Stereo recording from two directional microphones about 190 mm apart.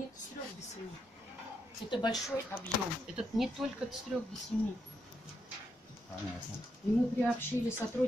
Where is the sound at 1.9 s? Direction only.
20° left (ahead or behind).